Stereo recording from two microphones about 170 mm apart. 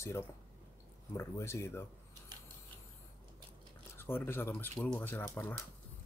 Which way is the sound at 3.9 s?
15° left (ahead or behind).